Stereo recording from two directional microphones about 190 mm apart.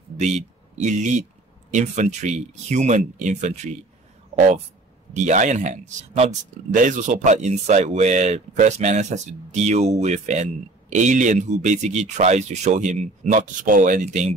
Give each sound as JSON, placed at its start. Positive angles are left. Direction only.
{"t": 0.2, "sound": "speech", "side_deg": -35}
{"t": 5.1, "sound": "speech", "side_deg": -40}